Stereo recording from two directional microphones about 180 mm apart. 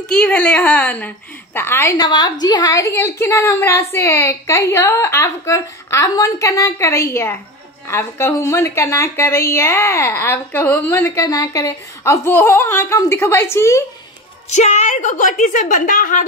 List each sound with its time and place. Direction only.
0.1 s a woman's voice: 5° left (ahead or behind)
14.5 s a woman's voice: 40° left (ahead or behind)